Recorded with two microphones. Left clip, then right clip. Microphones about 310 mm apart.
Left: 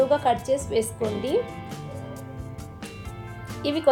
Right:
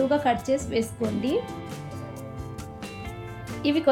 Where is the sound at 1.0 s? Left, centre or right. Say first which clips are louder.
Left 2 dB; centre.